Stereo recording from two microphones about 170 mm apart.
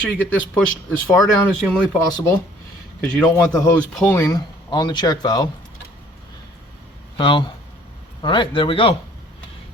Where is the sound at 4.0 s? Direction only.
10° left (ahead or behind).